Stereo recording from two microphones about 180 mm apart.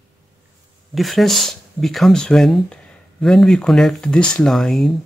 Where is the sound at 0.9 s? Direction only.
Centre (ahead or behind).